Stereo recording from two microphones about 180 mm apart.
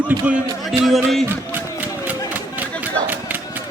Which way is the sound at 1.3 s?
10° right (ahead or behind).